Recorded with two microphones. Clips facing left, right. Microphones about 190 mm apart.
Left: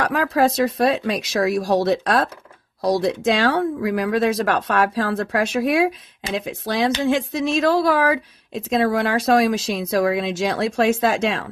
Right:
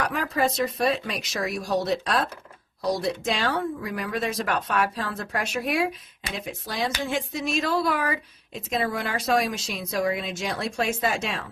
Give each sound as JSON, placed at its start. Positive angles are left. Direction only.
{"t": 0.0, "sound": "speech", "side_deg": 70}